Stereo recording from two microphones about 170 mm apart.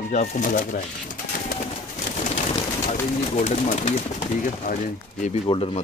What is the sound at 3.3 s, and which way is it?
Speech, 45° left (ahead or behind).